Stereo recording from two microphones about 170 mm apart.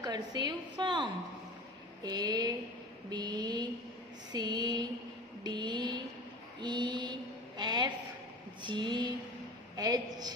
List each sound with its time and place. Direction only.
0.0 s a woman's voice: 25° right (ahead or behind)
6.6 s mantra: 25° right (ahead or behind)
8.6 s a woman's voice: 25° right (ahead or behind)